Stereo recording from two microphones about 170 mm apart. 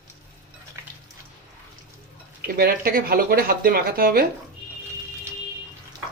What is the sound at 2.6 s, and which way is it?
Speech, 60° right (ahead or behind).